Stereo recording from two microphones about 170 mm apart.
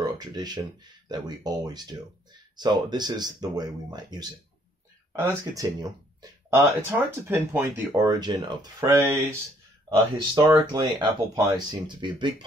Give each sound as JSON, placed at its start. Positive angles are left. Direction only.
{"t": 0.0, "sound": "speech", "side_deg": -25}
{"t": 9.8, "sound": "speech", "side_deg": -25}